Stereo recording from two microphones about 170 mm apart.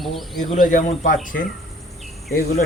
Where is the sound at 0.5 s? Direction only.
50° left (ahead or behind).